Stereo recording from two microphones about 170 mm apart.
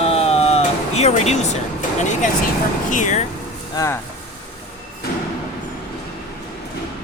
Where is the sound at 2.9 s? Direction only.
45° left (ahead or behind).